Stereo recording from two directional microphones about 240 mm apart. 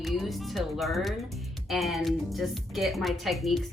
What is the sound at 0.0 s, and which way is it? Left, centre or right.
A woman's voice, centre.